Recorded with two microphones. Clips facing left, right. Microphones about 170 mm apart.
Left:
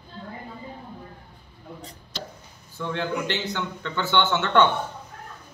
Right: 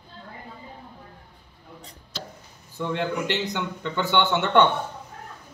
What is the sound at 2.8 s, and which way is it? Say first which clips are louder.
Speech: right 1 dB; 15° right (ahead or behind).